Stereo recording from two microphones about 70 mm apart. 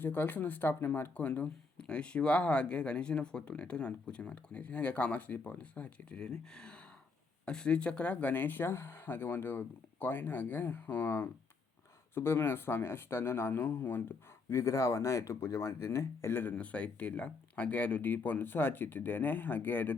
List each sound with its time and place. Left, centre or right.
0.0 s speech: left
14.5 s speech: left